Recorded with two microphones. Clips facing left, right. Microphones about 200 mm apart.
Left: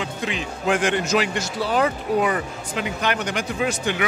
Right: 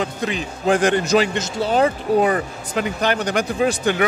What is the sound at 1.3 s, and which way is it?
Speech, 25° right (ahead or behind).